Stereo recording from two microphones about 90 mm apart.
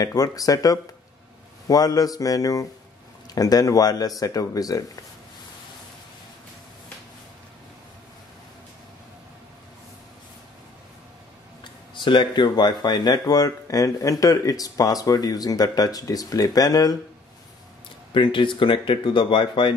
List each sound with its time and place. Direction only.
0.0 s speech: 40° left (ahead or behind)
11.9 s speech: 65° left (ahead or behind); by 16.9 s 45° left (ahead or behind)
18.1 s speech: 65° left (ahead or behind)